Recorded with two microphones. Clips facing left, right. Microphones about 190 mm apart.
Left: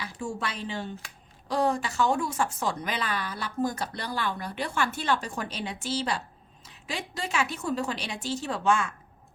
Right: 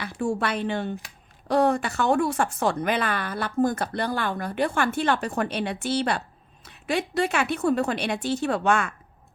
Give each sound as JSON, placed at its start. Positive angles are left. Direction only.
{"t": 0.0, "sound": "speech", "side_deg": -60}